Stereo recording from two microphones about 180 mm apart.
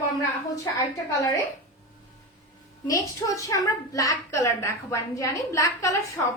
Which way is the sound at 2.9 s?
20° left (ahead or behind).